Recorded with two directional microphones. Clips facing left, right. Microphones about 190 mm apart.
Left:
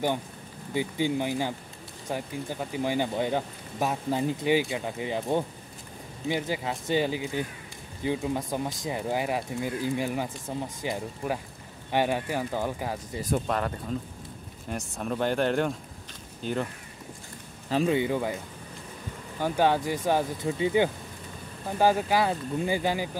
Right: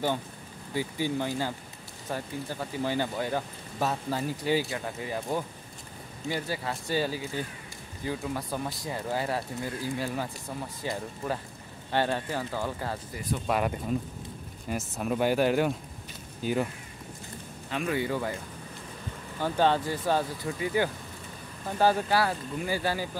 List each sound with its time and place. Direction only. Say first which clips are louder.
0.7 s speech: left 3 dB; 20° left (ahead or behind)
13.5 s speech: right 2 dB; 10° right (ahead or behind)
17.6 s speech: left 6 dB; 30° left (ahead or behind)
17.9 s speech: left 3 dB; 15° left (ahead or behind)
19.4 s speech: left 1 dB; 10° left (ahead or behind)